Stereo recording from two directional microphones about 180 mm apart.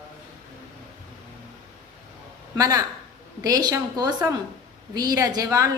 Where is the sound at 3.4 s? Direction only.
20° right (ahead or behind).